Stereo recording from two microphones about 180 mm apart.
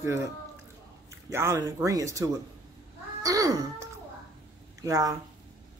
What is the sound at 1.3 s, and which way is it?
A woman's voice, 15° right (ahead or behind).